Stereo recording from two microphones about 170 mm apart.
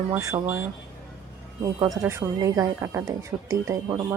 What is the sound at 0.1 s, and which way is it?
Speech, 15° right (ahead or behind).